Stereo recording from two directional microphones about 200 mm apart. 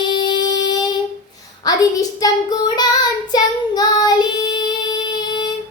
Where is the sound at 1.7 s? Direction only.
20° left (ahead or behind).